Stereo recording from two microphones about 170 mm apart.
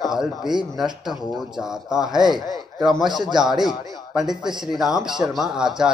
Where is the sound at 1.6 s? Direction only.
5° right (ahead or behind).